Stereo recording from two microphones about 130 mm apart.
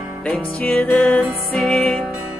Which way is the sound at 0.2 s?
10° left (ahead or behind).